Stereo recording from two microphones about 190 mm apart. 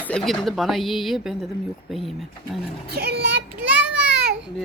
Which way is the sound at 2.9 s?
55° right (ahead or behind).